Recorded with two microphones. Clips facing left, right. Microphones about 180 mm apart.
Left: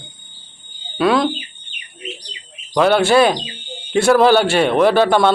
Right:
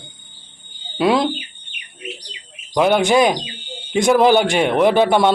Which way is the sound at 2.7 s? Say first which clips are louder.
Left 1 dB; 15° right (ahead or behind).